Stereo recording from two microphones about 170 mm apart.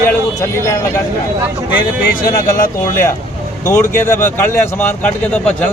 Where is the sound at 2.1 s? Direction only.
60° left (ahead or behind).